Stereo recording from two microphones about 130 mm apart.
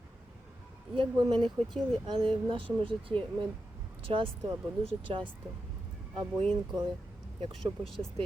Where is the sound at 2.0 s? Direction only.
40° right (ahead or behind).